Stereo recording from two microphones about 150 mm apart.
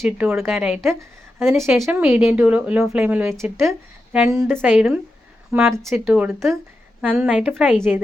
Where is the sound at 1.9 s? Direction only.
10° right (ahead or behind).